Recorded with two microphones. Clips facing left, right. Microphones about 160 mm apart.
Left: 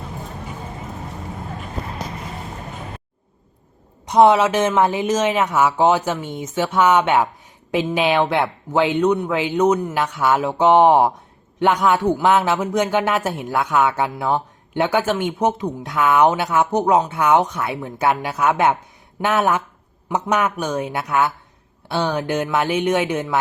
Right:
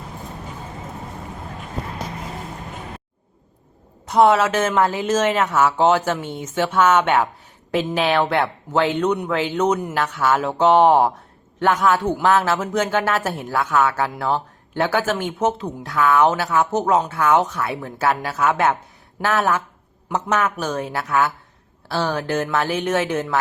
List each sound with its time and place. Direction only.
4.1 s speech: 15° left (ahead or behind)